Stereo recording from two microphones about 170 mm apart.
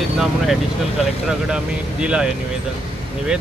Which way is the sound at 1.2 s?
5° right (ahead or behind).